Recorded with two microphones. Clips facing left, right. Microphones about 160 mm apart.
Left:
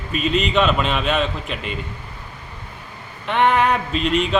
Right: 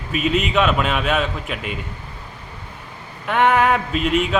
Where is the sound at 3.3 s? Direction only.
5° right (ahead or behind).